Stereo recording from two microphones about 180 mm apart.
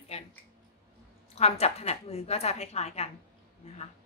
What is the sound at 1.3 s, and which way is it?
A woman's voice, 35° left (ahead or behind).